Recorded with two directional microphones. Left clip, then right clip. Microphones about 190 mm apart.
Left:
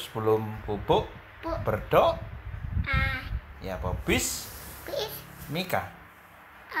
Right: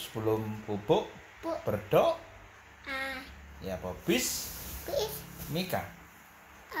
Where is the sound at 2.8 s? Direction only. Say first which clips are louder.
Left 7 dB; 20° right (ahead or behind).